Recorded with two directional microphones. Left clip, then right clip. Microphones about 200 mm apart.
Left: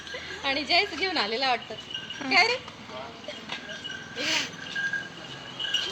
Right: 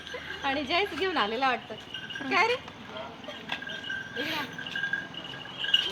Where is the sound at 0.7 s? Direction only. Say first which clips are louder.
Left 5 dB; 55° right (ahead or behind).